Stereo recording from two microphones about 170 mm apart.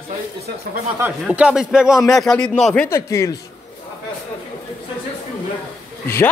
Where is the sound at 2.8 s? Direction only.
15° left (ahead or behind).